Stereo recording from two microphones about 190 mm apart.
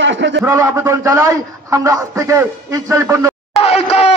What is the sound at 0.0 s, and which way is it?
Speech, 70° right (ahead or behind).